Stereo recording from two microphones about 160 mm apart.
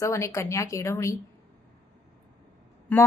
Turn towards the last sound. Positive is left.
turn(degrees=10)  # may be behind; listen again after turning